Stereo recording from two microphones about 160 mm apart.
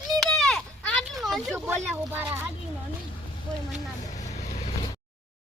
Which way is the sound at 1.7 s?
10° right (ahead or behind).